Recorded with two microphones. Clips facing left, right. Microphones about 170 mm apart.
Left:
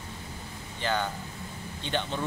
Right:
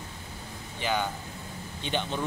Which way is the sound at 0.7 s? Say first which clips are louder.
Even; 15° right (ahead or behind).